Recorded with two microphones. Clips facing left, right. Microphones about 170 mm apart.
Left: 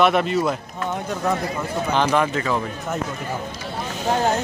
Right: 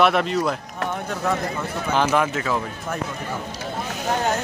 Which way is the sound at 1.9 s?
5° right (ahead or behind).